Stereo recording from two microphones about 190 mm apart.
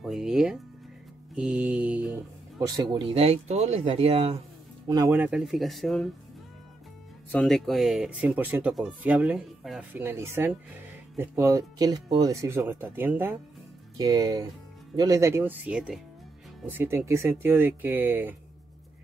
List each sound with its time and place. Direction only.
0.0 s speech: centre (ahead or behind)
1.3 s mantra: 5° right (ahead or behind)
2.6 s speech: 20° right (ahead or behind)
4.8 s speech: 20° right (ahead or behind)
5.1 s speech: 5° right (ahead or behind)
7.2 s speech: 5° left (ahead or behind)